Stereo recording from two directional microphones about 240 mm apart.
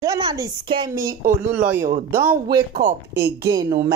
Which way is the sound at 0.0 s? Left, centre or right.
Centre.